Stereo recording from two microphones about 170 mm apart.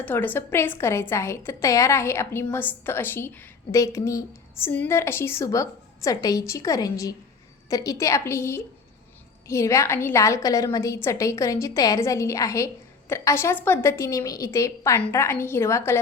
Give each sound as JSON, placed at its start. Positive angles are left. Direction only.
{"t": 0.0, "sound": "a woman's voice", "side_deg": 10}